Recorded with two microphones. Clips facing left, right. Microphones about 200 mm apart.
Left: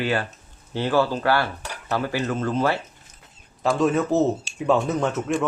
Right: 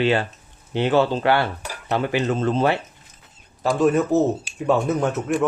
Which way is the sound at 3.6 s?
Centre (ahead or behind).